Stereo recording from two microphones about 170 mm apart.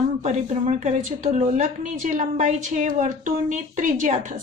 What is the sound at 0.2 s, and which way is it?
A woman's voice, 45° right (ahead or behind).